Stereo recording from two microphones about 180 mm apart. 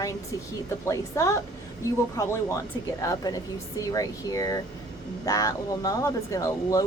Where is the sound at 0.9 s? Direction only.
15° left (ahead or behind).